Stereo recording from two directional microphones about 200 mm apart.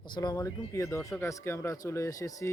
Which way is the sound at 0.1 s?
20° left (ahead or behind).